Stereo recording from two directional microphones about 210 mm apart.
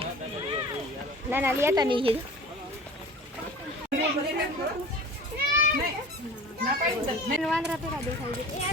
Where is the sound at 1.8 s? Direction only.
25° right (ahead or behind).